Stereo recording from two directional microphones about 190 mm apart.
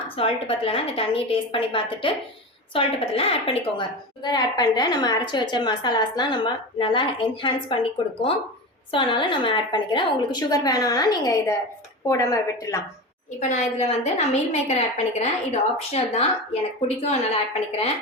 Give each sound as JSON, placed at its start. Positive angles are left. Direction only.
{"t": 0.2, "sound": "a woman's voice", "side_deg": 30}
{"t": 13.5, "sound": "a woman's voice", "side_deg": 35}